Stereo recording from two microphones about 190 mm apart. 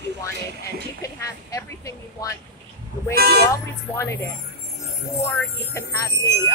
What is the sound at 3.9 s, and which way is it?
Speech, 15° left (ahead or behind).